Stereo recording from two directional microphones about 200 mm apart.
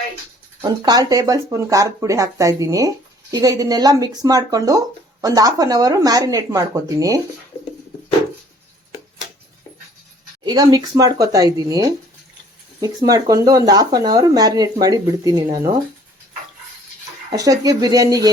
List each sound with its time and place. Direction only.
0.6 s speech: 20° right (ahead or behind)
10.4 s speech: 20° right (ahead or behind)
17.3 s speech: 15° right (ahead or behind)